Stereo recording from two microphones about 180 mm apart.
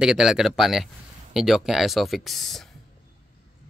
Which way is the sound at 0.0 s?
5° right (ahead or behind).